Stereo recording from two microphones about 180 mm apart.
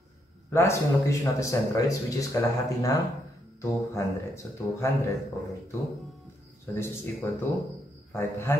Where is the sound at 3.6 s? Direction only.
15° left (ahead or behind).